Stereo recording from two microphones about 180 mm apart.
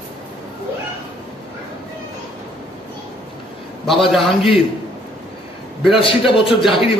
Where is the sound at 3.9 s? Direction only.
Centre (ahead or behind).